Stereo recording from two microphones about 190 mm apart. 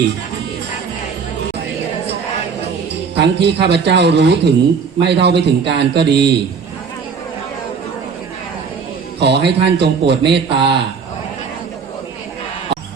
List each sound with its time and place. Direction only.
2.9 s speech: 60° right (ahead or behind)
9.2 s speech: 60° right (ahead or behind)